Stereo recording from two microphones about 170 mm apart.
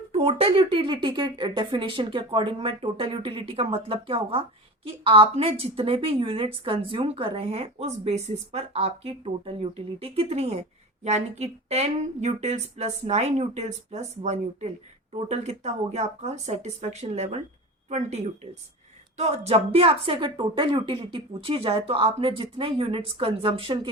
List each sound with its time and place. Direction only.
0.1 s a woman's voice: 35° right (ahead or behind)